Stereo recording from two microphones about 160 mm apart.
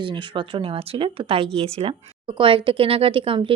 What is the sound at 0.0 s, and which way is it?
A woman's voice, 30° right (ahead or behind).